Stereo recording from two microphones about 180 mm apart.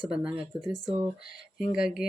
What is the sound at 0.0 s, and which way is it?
Speech, 5° right (ahead or behind).